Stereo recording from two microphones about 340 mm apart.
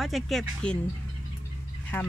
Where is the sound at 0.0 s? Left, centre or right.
Centre.